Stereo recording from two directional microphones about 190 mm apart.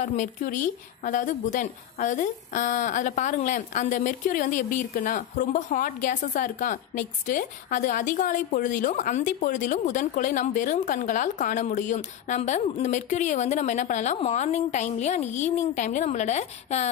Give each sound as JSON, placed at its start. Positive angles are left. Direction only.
{"t": 0.0, "sound": "a woman's voice", "side_deg": 40}